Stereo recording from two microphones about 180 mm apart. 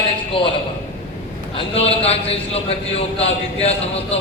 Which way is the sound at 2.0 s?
35° left (ahead or behind).